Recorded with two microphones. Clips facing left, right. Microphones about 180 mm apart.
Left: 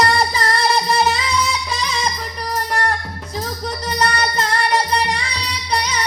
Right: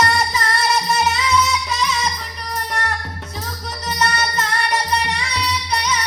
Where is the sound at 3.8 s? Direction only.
35° left (ahead or behind).